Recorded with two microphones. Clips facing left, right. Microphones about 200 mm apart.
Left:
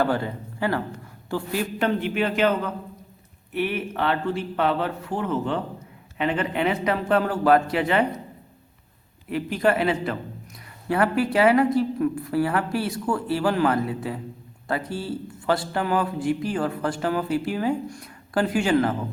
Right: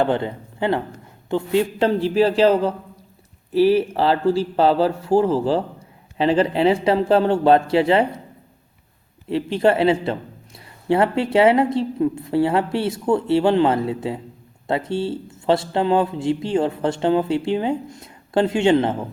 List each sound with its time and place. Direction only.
0.0 s a man's voice: 20° right (ahead or behind)
9.3 s speech: 30° right (ahead or behind)